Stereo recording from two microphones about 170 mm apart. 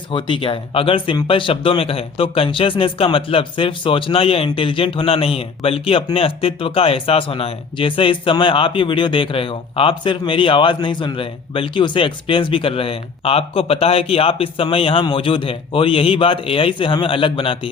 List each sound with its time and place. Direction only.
0.1 s speech: 30° left (ahead or behind)